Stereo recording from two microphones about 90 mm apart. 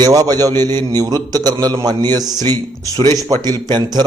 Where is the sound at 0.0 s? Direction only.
45° right (ahead or behind).